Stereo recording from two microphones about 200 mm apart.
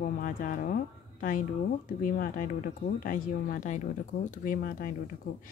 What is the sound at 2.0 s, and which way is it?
Speech, 45° left (ahead or behind).